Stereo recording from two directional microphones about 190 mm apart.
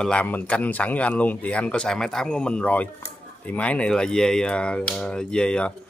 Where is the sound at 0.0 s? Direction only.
5° left (ahead or behind).